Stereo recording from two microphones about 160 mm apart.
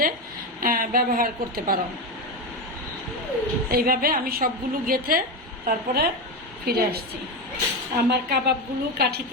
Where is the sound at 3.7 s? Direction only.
65° right (ahead or behind).